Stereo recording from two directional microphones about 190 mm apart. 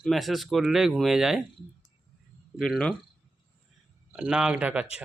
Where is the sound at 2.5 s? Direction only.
5° left (ahead or behind).